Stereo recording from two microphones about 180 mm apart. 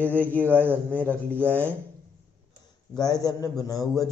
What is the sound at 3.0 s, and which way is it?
A man's voice, 20° left (ahead or behind).